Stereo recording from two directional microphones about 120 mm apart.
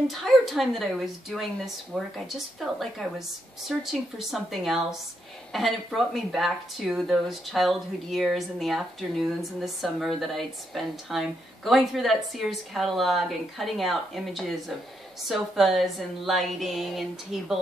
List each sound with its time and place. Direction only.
0.1 s speech: centre (ahead or behind)